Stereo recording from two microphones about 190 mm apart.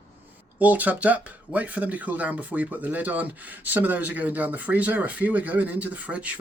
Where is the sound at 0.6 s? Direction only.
10° right (ahead or behind).